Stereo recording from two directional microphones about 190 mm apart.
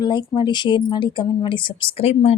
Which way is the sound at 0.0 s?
25° left (ahead or behind).